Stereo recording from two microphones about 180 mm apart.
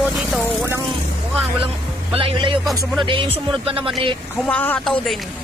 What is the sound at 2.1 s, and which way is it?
Speech, 30° right (ahead or behind).